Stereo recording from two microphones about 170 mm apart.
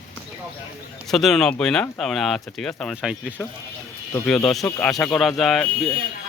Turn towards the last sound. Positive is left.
turn(degrees=0)  # may be behind; listen again after turning